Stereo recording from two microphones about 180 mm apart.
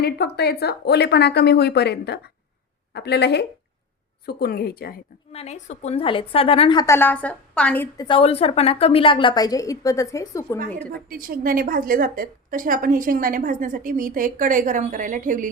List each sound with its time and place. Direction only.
0.0 s speech: 60° left (ahead or behind)
5.3 s a woman's voice: 35° left (ahead or behind); by 7.9 s 5° left (ahead or behind)
7.9 s a woman's voice: 25° left (ahead or behind); by 11.0 s 5° left (ahead or behind)
11.1 s a woman's voice: 55° right (ahead or behind)